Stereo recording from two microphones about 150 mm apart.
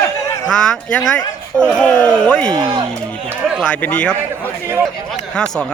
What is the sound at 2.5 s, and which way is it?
Speech, 30° right (ahead or behind).